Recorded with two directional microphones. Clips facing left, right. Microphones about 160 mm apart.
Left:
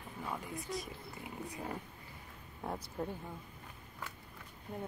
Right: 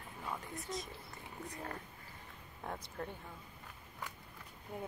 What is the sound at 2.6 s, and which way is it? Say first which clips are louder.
Speech: left 4 dB; 10° left (ahead or behind).